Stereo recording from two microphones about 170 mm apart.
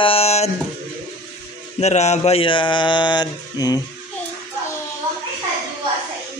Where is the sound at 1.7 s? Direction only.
40° left (ahead or behind); by 3.8 s 25° left (ahead or behind).